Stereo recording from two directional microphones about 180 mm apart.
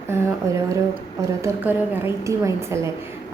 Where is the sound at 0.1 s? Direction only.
15° right (ahead or behind).